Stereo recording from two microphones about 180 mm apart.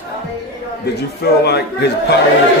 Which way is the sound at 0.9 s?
65° left (ahead or behind).